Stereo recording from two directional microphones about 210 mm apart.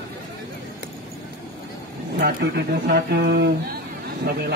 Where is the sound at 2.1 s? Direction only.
50° right (ahead or behind).